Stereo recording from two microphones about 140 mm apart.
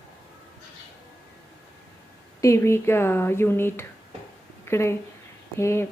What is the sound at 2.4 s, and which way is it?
Speech, 20° left (ahead or behind).